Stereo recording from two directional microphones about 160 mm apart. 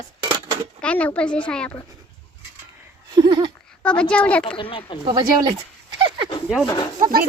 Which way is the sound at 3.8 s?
5° left (ahead or behind).